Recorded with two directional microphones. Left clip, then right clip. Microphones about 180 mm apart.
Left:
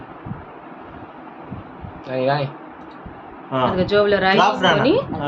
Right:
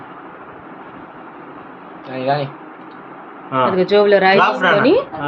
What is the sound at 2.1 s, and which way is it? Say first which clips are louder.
Speech: right 1 dB; 85° left.